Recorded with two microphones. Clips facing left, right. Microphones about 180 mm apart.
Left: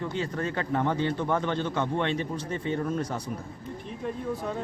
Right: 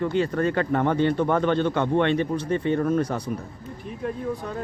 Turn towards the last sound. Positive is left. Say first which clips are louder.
# right 6 dB
turn(degrees=-60)  # may be behind; listen again after turning